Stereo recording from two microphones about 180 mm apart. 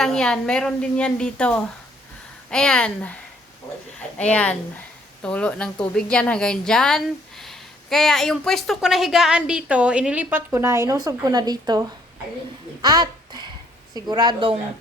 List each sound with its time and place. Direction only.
0.0 s a woman's voice: 5° left (ahead or behind)
4.2 s a woman's voice: 5° left (ahead or behind); by 14.6 s 25° right (ahead or behind)